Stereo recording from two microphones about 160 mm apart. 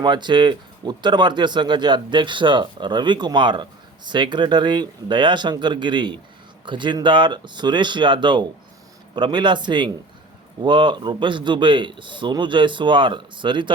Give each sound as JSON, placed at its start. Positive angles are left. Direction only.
{"t": 0.0, "sound": "speech", "side_deg": -30}